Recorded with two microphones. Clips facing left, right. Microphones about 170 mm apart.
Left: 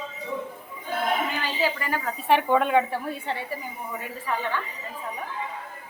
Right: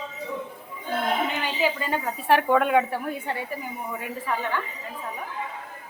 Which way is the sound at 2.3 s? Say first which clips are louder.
Right 1 dB; 5° right (ahead or behind).